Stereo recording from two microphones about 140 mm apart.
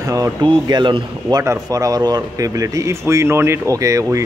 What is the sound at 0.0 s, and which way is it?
A man's voice, 25° right (ahead or behind).